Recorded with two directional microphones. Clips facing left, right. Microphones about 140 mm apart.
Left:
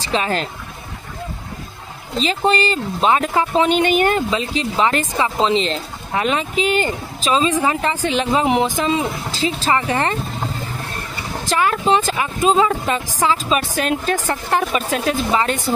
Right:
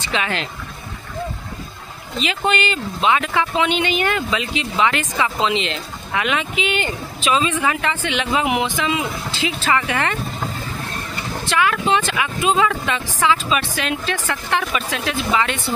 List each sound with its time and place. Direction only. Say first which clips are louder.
0.0 s speech: left 3 dB; 35° left (ahead or behind)
2.1 s speech: left 3 dB; 35° left (ahead or behind)
11.4 s speech: left 2 dB; 40° left (ahead or behind)